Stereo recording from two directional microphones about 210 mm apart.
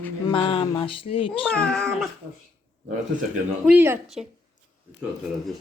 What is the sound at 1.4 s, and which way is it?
Speech, 5° left (ahead or behind).